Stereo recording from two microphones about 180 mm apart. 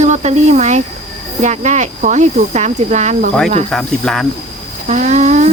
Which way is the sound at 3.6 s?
Centre (ahead or behind).